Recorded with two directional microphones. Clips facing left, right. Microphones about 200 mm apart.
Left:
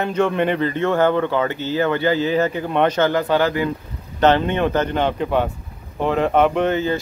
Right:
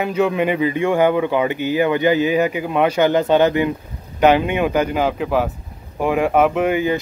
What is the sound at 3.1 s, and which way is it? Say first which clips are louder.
Speech: right 4 dB; 20° right (ahead or behind).